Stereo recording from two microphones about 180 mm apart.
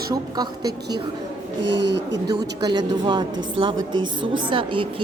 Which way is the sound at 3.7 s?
90° right.